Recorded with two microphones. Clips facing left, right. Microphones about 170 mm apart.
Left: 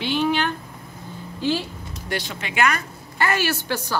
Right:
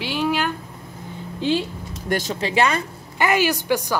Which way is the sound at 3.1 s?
15° right (ahead or behind).